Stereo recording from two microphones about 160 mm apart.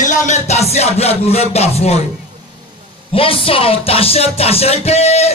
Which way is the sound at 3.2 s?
35° left (ahead or behind).